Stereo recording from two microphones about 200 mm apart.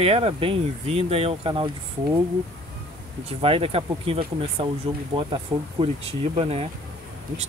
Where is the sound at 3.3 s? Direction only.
30° right (ahead or behind).